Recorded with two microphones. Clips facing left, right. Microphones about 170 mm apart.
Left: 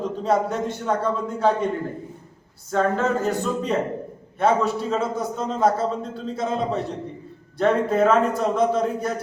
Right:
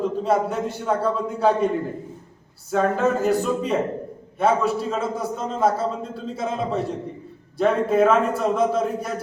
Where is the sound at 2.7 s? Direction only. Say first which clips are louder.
Right 1 dB; 10° right (ahead or behind).